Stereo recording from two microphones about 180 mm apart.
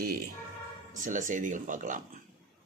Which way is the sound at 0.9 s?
45° right (ahead or behind).